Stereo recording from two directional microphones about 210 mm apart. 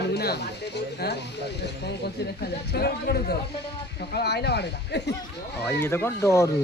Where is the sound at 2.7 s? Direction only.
50° left (ahead or behind).